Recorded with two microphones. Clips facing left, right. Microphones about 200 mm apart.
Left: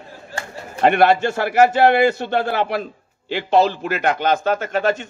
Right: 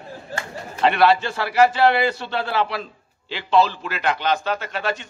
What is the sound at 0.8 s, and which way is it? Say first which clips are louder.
A man's voice: left 3 dB; 50° left (ahead or behind).